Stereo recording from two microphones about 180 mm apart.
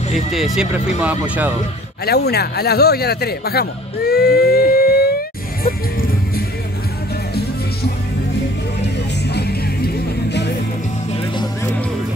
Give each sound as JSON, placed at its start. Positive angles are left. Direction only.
{"t": 0.1, "sound": "speech", "side_deg": 0}
{"t": 2.0, "sound": "speech", "side_deg": 60}
{"t": 5.6, "sound": "music", "side_deg": 55}
{"t": 9.3, "sound": "music", "side_deg": 65}